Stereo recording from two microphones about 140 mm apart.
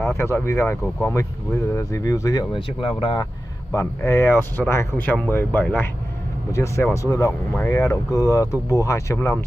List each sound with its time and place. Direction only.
0.2 s speech: 20° left (ahead or behind)
2.5 s speech: 40° left (ahead or behind)
3.7 s speech: 20° left (ahead or behind)